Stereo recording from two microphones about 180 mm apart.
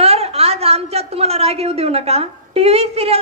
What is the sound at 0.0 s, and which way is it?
A woman's voice, 35° right (ahead or behind).